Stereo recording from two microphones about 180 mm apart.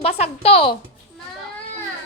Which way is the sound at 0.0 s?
35° left (ahead or behind).